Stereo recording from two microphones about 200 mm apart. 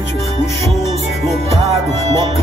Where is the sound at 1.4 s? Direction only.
30° right (ahead or behind).